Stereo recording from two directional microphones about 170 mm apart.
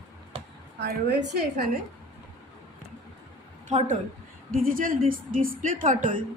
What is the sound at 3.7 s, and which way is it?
Speech, 45° right (ahead or behind).